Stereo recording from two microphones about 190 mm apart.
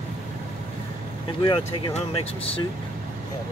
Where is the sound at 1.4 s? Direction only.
25° left (ahead or behind).